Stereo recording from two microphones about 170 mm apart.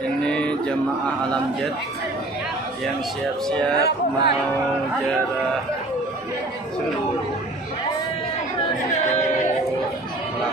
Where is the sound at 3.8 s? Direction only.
75° left (ahead or behind).